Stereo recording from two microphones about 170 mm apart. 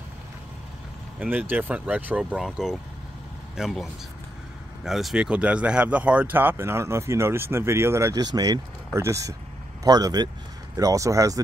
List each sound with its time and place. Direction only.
1.2 s speech: 10° right (ahead or behind)
4.8 s speech: centre (ahead or behind); by 11.4 s 20° right (ahead or behind)